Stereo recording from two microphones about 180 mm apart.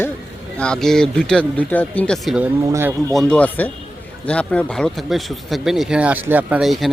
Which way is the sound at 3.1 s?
5° left (ahead or behind).